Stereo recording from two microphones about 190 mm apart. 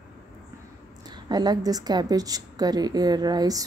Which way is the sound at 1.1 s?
20° right (ahead or behind).